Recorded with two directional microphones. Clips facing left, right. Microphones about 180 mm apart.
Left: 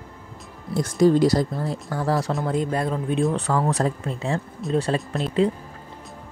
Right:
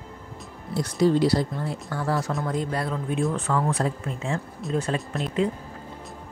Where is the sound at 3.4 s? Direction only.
40° left (ahead or behind).